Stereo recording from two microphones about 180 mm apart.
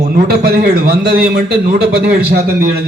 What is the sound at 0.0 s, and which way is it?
A man's voice, 60° right (ahead or behind).